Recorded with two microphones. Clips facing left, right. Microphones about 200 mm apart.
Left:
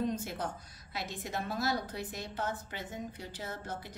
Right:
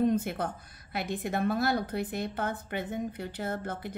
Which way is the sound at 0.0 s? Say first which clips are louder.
Right 7 dB; 55° right (ahead or behind).